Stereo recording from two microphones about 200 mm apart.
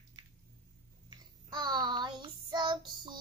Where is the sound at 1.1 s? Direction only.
20° right (ahead or behind).